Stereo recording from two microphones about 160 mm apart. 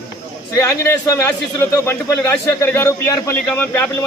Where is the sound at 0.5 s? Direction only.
20° left (ahead or behind).